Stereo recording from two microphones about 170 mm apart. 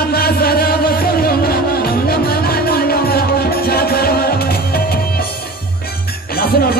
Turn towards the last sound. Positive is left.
turn(degrees=65)  # may be behind; listen again after turning